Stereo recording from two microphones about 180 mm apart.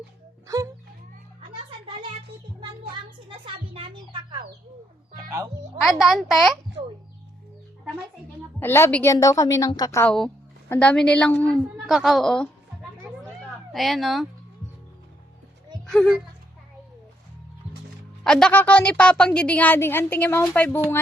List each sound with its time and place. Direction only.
0.4 s speech: 15° right (ahead or behind)
3.2 s a child's voice: 30° right (ahead or behind)
5.8 s a woman's voice: centre (ahead or behind)
8.5 s a woman's voice: 15° left (ahead or behind)
10.1 s a woman's voice: 5° left (ahead or behind)
13.7 s a woman's voice: centre (ahead or behind)
18.2 s a woman's voice: 5° left (ahead or behind)